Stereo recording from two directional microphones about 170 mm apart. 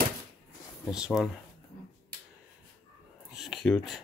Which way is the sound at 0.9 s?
Centre (ahead or behind).